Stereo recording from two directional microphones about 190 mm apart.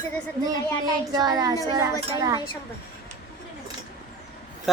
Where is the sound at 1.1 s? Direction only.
20° right (ahead or behind).